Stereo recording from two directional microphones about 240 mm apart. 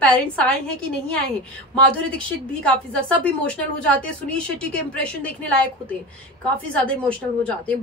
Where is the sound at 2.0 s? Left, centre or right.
Centre.